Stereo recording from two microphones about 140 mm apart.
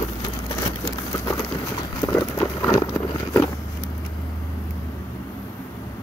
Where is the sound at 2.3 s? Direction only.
15° left (ahead or behind).